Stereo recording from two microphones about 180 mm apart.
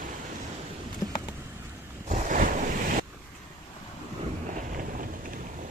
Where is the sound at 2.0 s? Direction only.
45° right (ahead or behind).